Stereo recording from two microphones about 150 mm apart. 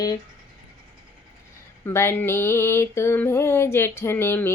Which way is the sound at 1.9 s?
15° left (ahead or behind).